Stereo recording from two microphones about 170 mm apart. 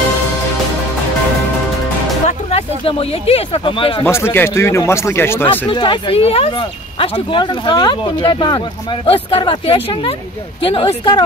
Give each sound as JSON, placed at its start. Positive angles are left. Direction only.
{"t": 2.2, "sound": "speech", "side_deg": 35}
{"t": 4.0, "sound": "speech", "side_deg": 15}
{"t": 5.7, "sound": "speech", "side_deg": 30}